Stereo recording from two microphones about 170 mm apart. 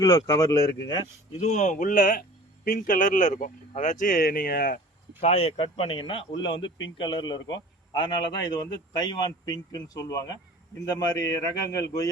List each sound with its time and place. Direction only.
0.0 s speech: 20° left (ahead or behind)
1.4 s speech: 45° left (ahead or behind); by 4.8 s 65° left (ahead or behind)
5.2 s speech: 35° left (ahead or behind); by 12.0 s 20° left (ahead or behind)